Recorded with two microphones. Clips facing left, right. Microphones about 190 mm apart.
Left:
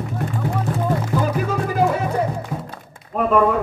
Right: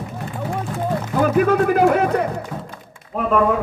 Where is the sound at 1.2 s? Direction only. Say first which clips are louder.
Right 6 dB; 60° right (ahead or behind).